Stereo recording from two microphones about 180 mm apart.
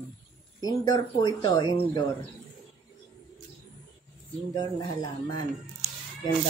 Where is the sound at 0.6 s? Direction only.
20° left (ahead or behind).